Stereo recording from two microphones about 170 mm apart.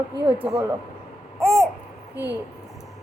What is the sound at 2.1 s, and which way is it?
Speech, 90° right.